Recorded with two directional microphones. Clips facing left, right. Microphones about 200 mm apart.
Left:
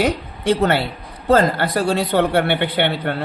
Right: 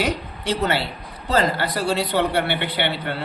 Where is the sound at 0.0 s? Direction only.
50° left (ahead or behind).